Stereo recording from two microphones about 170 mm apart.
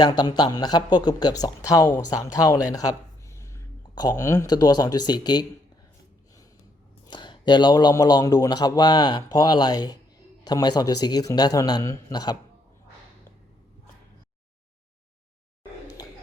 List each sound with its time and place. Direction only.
0.0 s speech: 25° left (ahead or behind)
7.1 s speech: 25° left (ahead or behind)
16.0 s a sound: 25° left (ahead or behind)